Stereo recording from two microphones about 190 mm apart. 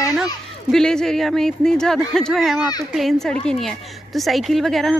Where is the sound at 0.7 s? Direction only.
5° left (ahead or behind).